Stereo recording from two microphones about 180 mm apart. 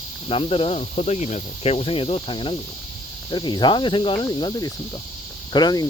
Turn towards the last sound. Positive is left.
turn(degrees=20)  # may be behind; listen again after turning